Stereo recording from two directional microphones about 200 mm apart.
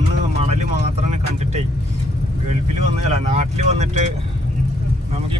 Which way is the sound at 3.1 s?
35° right (ahead or behind).